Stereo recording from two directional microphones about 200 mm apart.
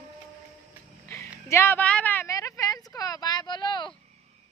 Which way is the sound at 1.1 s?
15° left (ahead or behind).